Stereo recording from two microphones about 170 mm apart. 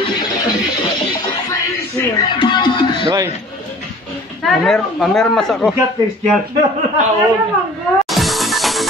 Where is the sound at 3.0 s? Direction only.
20° right (ahead or behind).